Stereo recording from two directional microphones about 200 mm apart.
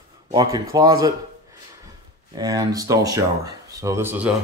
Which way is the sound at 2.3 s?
20° right (ahead or behind).